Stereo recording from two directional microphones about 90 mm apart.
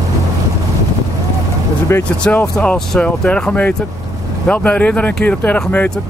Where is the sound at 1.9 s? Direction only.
25° left (ahead or behind).